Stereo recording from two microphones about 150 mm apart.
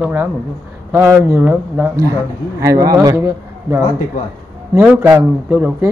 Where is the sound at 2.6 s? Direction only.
20° right (ahead or behind).